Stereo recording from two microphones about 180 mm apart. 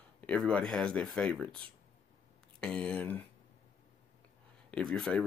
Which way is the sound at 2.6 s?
5° left (ahead or behind).